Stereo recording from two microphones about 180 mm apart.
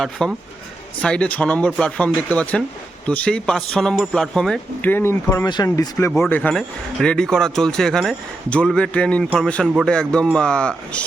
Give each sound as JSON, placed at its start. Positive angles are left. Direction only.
{"t": 0.0, "sound": "speech", "side_deg": 0}